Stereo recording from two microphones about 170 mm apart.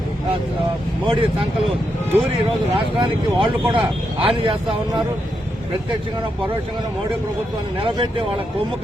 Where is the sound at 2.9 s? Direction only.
30° right (ahead or behind).